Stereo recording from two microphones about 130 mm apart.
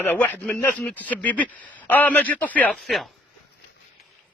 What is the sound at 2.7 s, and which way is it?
Speech, centre (ahead or behind).